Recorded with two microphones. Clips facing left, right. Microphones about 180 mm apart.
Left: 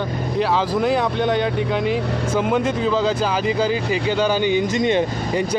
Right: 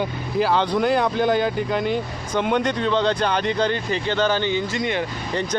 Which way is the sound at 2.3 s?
5° left (ahead or behind).